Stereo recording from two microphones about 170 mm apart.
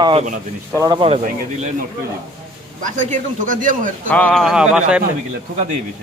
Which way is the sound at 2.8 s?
50° right (ahead or behind).